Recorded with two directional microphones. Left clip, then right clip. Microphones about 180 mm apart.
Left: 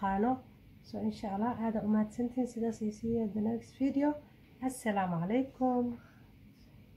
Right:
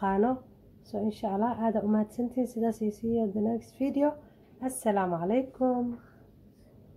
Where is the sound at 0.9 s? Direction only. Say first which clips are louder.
Right 7 dB; 35° right (ahead or behind).